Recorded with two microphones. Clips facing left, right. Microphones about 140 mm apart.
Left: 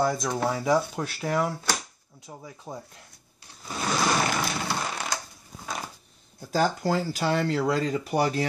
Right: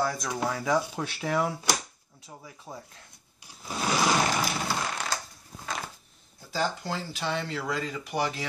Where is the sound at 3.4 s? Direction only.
5° right (ahead or behind).